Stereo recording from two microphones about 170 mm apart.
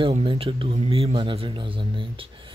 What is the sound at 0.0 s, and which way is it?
Speech, 30° right (ahead or behind).